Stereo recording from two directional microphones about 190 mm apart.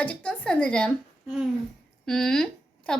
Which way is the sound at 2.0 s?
5° left (ahead or behind).